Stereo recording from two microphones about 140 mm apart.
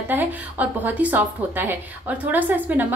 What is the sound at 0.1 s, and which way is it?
A woman's voice, 15° right (ahead or behind).